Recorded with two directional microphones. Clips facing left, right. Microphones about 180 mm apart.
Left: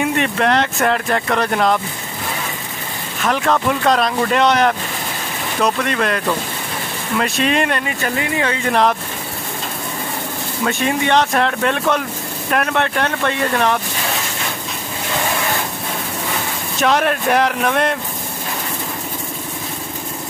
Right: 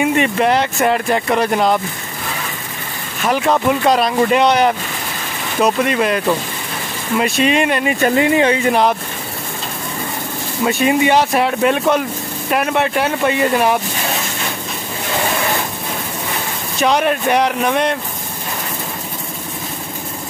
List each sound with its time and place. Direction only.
0.0 s speech: 5° right (ahead or behind)
3.3 s speech: 5° right (ahead or behind)
8.0 s speech: 25° right (ahead or behind)
8.6 s speech: centre (ahead or behind)
10.6 s speech: 5° right (ahead or behind)
16.8 s speech: centre (ahead or behind)